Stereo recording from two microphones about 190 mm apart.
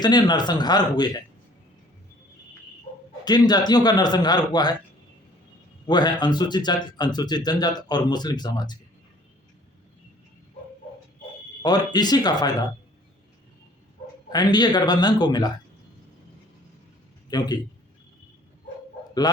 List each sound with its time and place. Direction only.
0.0 s speech: 20° left (ahead or behind)
3.2 s speech: 20° left (ahead or behind)
5.8 s speech: 20° left (ahead or behind)
11.6 s speech: 20° left (ahead or behind)
14.3 s speech: 20° left (ahead or behind)
17.2 s a man's voice: 20° left (ahead or behind)
19.2 s a man's voice: 20° left (ahead or behind)